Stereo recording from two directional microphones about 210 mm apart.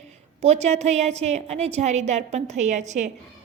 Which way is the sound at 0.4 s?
30° right (ahead or behind).